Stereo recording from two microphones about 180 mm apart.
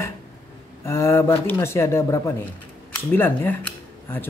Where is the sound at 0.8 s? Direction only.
15° left (ahead or behind).